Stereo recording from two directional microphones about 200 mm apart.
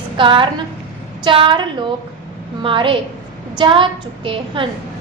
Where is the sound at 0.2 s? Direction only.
25° right (ahead or behind).